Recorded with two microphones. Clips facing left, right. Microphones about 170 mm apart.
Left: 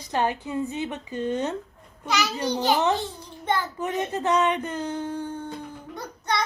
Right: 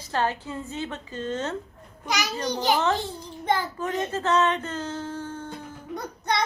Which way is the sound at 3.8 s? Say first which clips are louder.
Left 1 dB; 15° left (ahead or behind).